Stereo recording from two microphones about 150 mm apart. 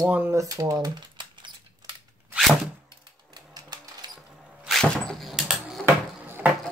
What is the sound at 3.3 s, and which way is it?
Sewing machine, 25° right (ahead or behind).